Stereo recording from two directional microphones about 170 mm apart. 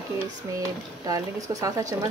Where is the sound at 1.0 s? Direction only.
20° right (ahead or behind).